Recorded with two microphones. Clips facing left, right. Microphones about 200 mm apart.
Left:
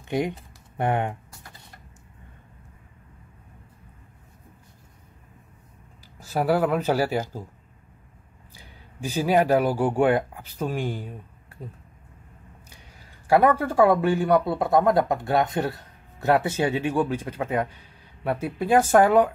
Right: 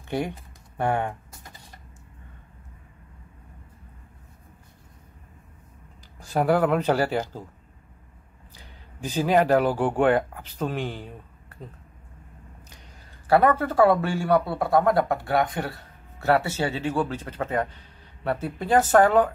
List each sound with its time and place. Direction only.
0.7 s speech: 20° left (ahead or behind)
6.1 s speech: 5° left (ahead or behind)
8.5 s speech: 10° left (ahead or behind)
13.3 s speech: 10° left (ahead or behind)